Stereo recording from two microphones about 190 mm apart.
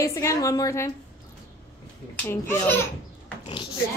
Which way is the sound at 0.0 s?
15° left (ahead or behind).